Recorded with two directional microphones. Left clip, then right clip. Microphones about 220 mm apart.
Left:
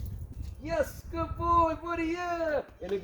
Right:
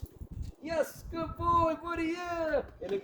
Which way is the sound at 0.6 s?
20° right (ahead or behind).